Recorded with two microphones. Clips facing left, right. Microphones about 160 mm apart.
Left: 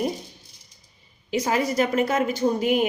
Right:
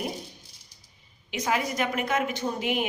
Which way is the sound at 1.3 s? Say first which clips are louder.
Left 5 dB; 35° left (ahead or behind).